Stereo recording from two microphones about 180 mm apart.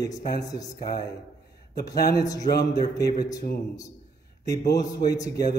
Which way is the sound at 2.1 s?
20° left (ahead or behind).